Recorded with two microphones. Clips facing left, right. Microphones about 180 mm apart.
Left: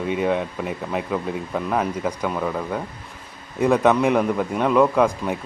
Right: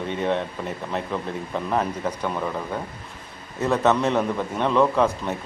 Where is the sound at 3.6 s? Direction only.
15° left (ahead or behind).